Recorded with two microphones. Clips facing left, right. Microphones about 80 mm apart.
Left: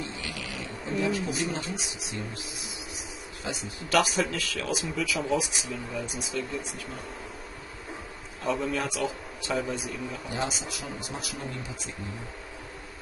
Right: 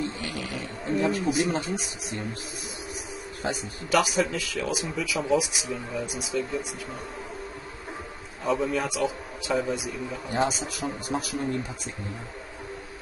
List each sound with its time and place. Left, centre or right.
0.0 s a sound: right
3.4 s a man's voice: right
3.9 s speech: centre
8.5 s speech: centre
10.3 s a man's voice: right